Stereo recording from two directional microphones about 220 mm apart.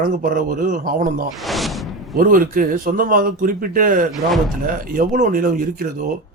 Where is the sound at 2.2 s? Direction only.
40° right (ahead or behind).